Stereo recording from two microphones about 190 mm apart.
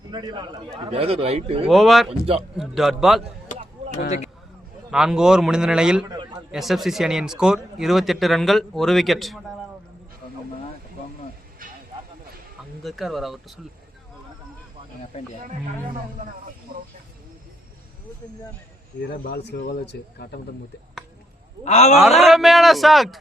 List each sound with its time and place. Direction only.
0.1 s a man's voice: 20° right (ahead or behind)
1.7 s speech: centre (ahead or behind)
2.0 s a man's voice: 30° right (ahead or behind)
2.6 s speech: centre (ahead or behind)
3.5 s a sound: 40° left (ahead or behind)
4.9 s speech: 5° right (ahead or behind)
12.8 s speech: centre (ahead or behind)
15.1 s a man's voice: 35° left (ahead or behind)
19.2 s speech: 55° left (ahead or behind)
21.6 s a man's voice: 35° left (ahead or behind)
22.2 s speech: centre (ahead or behind)